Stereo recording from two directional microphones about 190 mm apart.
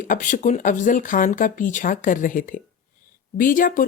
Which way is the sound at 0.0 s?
45° left (ahead or behind).